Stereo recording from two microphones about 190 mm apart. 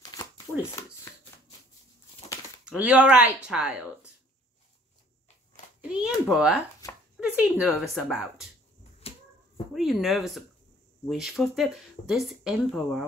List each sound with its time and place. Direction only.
0.0 s shuffling cards: 20° left (ahead or behind)
2.6 s speech: 5° right (ahead or behind)
5.8 s speech: 5° right (ahead or behind)
6.8 s a sound: 15° left (ahead or behind)
7.2 s speech: 5° right (ahead or behind)
9.0 s a sound: 30° left (ahead or behind)
9.8 s speech: centre (ahead or behind)